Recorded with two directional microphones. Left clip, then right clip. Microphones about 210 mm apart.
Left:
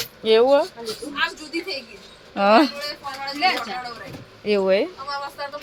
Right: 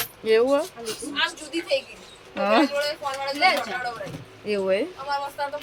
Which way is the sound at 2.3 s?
10° left (ahead or behind).